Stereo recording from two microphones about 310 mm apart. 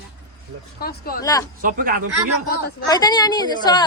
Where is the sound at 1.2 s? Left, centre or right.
Centre.